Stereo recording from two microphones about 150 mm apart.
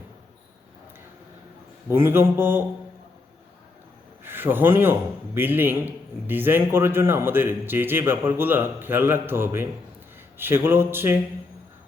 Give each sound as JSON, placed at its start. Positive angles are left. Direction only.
{"t": 1.9, "sound": "a man's voice", "side_deg": -15}
{"t": 4.2, "sound": "a man's voice", "side_deg": -15}